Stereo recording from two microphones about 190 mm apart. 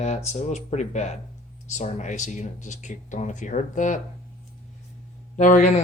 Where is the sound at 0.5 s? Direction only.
40° left (ahead or behind).